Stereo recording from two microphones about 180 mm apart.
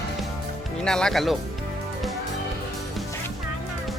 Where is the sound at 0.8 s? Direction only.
5° left (ahead or behind).